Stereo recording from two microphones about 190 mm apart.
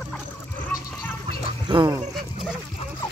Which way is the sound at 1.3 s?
25° right (ahead or behind).